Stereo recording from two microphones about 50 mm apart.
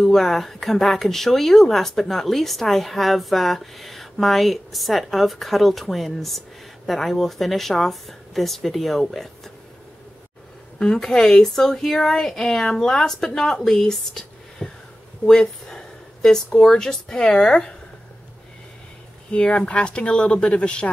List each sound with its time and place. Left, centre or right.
0.0 s speech: centre
10.8 s a woman's voice: centre
15.2 s a sound: centre
16.5 s a woman's voice: centre
19.3 s speech: left